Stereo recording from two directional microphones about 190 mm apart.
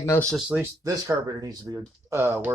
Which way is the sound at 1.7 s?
20° right (ahead or behind).